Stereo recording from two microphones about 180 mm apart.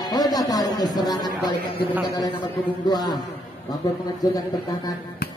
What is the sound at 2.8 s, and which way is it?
Speech, 20° left (ahead or behind).